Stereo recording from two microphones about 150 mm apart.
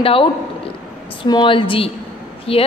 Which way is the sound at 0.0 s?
40° left (ahead or behind).